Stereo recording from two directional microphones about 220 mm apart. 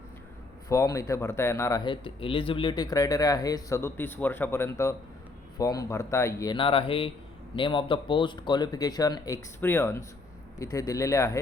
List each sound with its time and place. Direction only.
0.7 s speech: 15° left (ahead or behind)